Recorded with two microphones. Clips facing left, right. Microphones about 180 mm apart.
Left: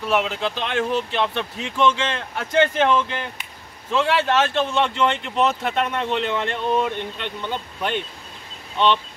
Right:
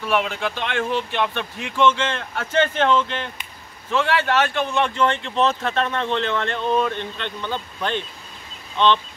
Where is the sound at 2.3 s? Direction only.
15° left (ahead or behind).